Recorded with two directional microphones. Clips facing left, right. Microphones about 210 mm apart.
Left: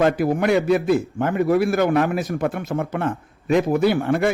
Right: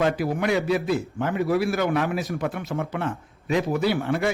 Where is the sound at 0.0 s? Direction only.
50° left (ahead or behind).